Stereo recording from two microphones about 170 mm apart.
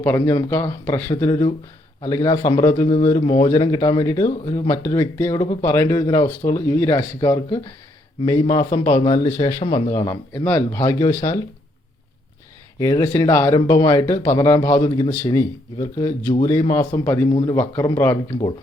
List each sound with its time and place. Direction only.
0.0 s speech: 10° left (ahead or behind)
1.1 s speech: 25° left (ahead or behind)
12.8 s speech: 20° left (ahead or behind)